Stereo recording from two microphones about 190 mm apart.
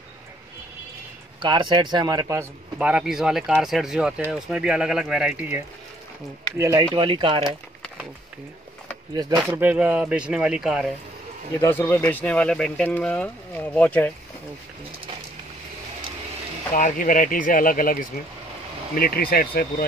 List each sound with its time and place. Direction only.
1.4 s speech: 25° right (ahead or behind)
2.9 s speech: 5° right (ahead or behind)
6.6 s speech: 15° right (ahead or behind)
7.0 s speech: 25° right (ahead or behind)
7.4 s a sound: 5° right (ahead or behind)
9.1 s speech: 20° right (ahead or behind)
9.6 s speech: 10° right (ahead or behind)
11.6 s speech: 15° left (ahead or behind)
16.7 s speech: 45° left (ahead or behind)